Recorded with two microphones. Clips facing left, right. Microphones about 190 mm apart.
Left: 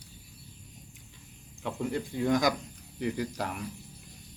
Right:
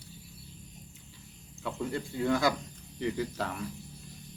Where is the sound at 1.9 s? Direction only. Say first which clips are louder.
Left 2 dB; 15° left (ahead or behind).